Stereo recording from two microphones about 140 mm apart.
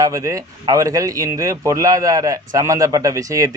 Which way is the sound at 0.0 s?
20° right (ahead or behind).